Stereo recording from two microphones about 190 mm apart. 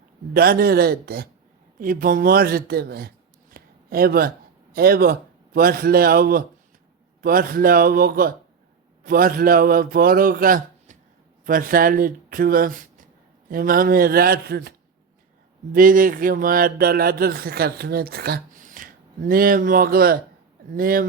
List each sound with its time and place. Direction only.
0.3 s speech: 55° right (ahead or behind)
3.5 s a sound: 50° right (ahead or behind)
4.7 s speech: 55° right (ahead or behind)
15.7 s speech: 45° right (ahead or behind)